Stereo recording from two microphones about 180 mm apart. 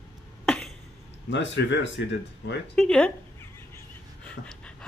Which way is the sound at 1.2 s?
85° left.